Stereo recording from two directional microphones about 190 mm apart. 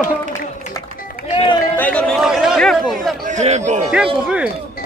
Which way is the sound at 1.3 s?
25° left (ahead or behind).